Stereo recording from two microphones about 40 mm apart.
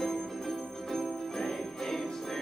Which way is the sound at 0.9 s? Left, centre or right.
Centre.